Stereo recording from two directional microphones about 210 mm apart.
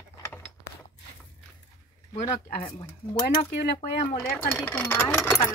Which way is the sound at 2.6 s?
30° left (ahead or behind).